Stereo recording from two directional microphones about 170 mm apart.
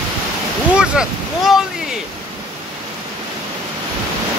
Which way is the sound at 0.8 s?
5° right (ahead or behind).